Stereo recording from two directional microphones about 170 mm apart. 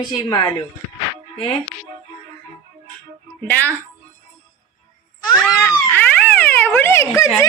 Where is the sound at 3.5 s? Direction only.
10° left (ahead or behind).